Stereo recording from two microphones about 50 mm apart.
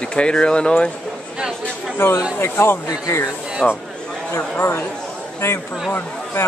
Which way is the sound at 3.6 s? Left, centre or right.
Left.